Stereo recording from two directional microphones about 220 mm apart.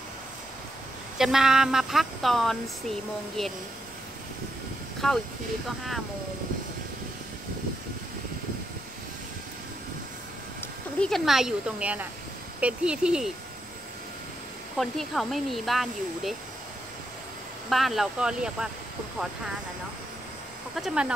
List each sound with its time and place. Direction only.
1.1 s speech: centre (ahead or behind)
5.0 s speech: centre (ahead or behind)
10.6 s speech: 5° left (ahead or behind)
14.8 s speech: centre (ahead or behind)
17.6 s speech: centre (ahead or behind)
20.7 s speech: 5° right (ahead or behind)